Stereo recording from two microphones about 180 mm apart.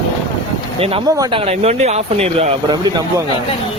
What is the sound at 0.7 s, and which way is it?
Speech, 30° right (ahead or behind).